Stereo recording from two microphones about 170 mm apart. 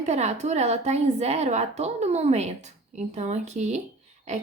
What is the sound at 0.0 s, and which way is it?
A woman's voice, 40° right (ahead or behind).